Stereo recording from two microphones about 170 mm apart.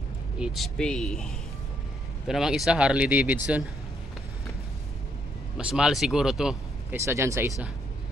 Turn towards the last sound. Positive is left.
turn(degrees=-15)  # may be behind; listen again after turning